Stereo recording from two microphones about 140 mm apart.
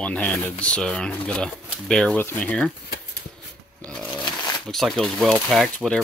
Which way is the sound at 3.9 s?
10° left (ahead or behind).